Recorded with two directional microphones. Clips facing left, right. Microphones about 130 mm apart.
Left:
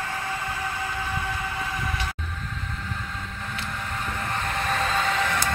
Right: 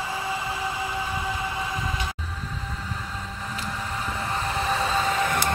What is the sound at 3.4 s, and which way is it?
Vehicle, 5° right (ahead or behind).